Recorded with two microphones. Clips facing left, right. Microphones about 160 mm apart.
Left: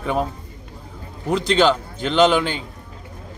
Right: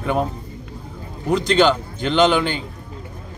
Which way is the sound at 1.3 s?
Centre (ahead or behind).